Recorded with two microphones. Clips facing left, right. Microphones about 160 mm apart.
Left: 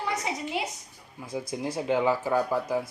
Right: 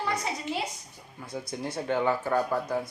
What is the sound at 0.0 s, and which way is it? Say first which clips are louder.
A woman's voice: even; 15° left (ahead or behind).